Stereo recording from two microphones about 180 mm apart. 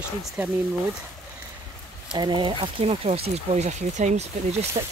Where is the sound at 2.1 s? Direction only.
25° right (ahead or behind).